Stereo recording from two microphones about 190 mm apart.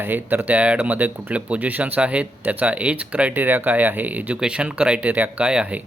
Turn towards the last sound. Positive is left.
turn(degrees=-5)  # may be behind; listen again after turning